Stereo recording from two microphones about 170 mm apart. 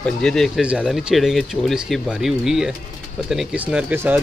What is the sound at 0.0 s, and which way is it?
Speech, 5° left (ahead or behind).